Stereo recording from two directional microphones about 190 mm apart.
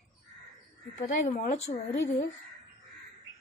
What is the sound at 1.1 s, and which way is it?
Speech, 40° left (ahead or behind).